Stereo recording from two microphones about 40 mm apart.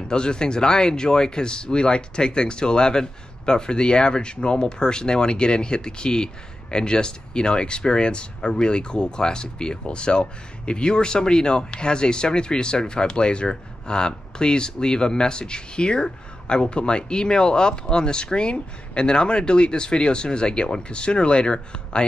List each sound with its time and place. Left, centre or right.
0.1 s speech: left